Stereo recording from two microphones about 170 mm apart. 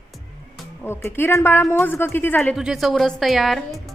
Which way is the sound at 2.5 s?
Centre (ahead or behind).